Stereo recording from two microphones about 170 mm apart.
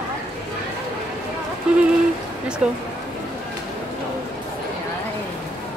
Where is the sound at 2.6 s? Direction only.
5° right (ahead or behind).